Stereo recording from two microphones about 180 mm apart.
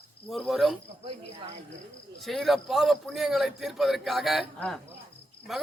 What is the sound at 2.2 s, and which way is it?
A man's voice, centre (ahead or behind).